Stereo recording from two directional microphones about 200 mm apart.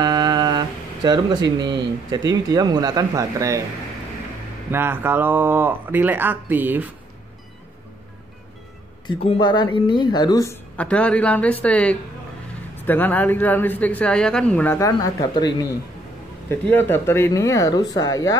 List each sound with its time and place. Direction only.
0.0 s speech: 20° right (ahead or behind)
4.6 s speech: 10° right (ahead or behind)
9.0 s speech: 25° left (ahead or behind)